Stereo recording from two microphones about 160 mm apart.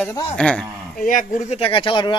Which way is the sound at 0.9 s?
55° left (ahead or behind).